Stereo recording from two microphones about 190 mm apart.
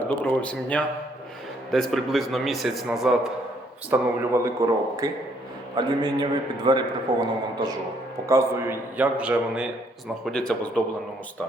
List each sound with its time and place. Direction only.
0.0 s a man's voice: 5° left (ahead or behind)
10.2 s a man's voice: 5° left (ahead or behind)